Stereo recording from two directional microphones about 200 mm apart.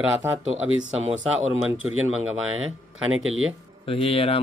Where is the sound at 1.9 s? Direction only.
90° right.